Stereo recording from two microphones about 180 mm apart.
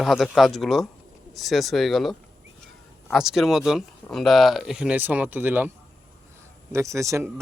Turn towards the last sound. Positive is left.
turn(degrees=-15)  # may be behind; listen again after turning